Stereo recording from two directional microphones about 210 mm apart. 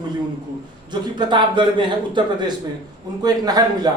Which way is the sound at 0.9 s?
20° right (ahead or behind).